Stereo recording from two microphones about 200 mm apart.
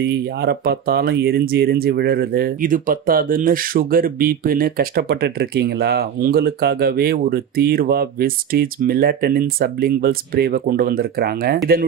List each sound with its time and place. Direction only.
0.0 s speech: 50° right (ahead or behind)